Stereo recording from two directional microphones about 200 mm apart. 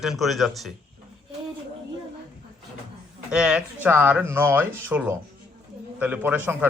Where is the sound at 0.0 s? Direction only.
Centre (ahead or behind).